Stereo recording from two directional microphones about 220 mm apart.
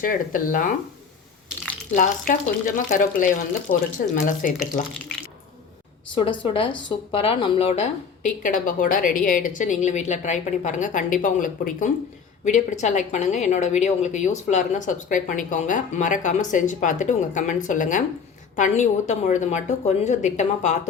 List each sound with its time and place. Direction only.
0.0 s speech: 40° left (ahead or behind)
1.9 s speech: 40° left (ahead or behind)
6.1 s speech: 25° left (ahead or behind)